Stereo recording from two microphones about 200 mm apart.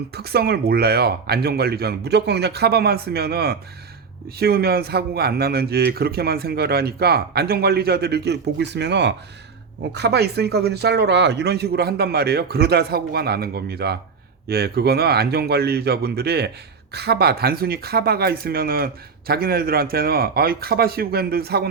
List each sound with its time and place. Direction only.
0.1 s a man's voice: 50° right (ahead or behind)